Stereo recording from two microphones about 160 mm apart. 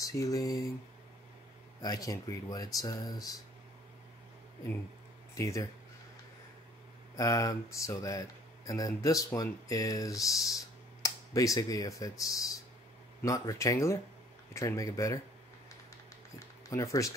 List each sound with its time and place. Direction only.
0.0 s speech: 20° left (ahead or behind)
1.8 s speech: 25° left (ahead or behind)
5.3 s speech: 20° left (ahead or behind)
7.2 s speech: 20° left (ahead or behind)
16.3 s a sound: 20° left (ahead or behind)